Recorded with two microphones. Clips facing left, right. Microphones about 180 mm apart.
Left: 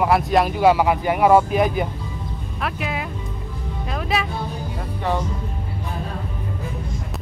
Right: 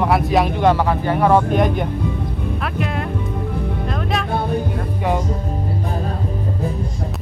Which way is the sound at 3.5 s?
60° right (ahead or behind).